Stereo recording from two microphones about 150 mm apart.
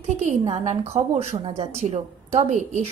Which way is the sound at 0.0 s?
50° right (ahead or behind).